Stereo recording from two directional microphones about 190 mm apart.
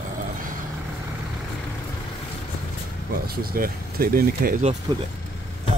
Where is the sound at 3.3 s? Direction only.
50° right (ahead or behind).